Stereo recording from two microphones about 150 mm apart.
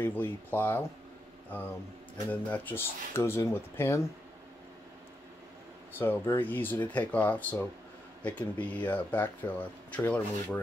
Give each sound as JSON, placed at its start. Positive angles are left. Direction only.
{"t": 0.0, "sound": "speech", "side_deg": 15}
{"t": 2.5, "sound": "speech", "side_deg": 15}
{"t": 5.9, "sound": "speech", "side_deg": 15}